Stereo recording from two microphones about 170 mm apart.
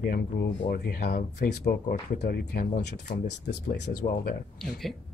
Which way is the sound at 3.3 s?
90° left.